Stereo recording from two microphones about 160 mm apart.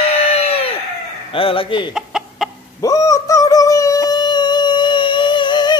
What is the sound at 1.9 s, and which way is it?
Chicken, 5° right (ahead or behind).